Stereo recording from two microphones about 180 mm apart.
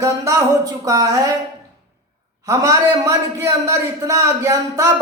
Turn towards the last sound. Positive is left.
turn(degrees=-15)  # may be behind; listen again after turning